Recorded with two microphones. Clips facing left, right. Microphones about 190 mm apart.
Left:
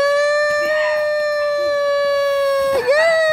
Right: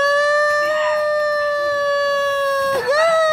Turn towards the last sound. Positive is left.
turn(degrees=15)  # may be behind; listen again after turning